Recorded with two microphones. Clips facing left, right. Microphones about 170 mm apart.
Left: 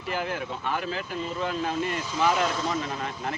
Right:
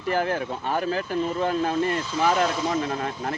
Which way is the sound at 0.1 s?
45° right (ahead or behind).